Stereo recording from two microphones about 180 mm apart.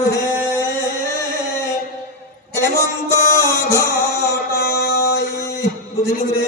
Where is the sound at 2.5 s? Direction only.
15° left (ahead or behind).